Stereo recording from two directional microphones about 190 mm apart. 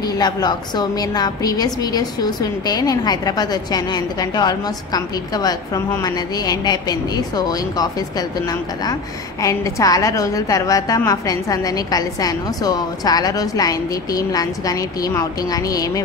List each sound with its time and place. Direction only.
0.0 s a woman's voice: 20° left (ahead or behind)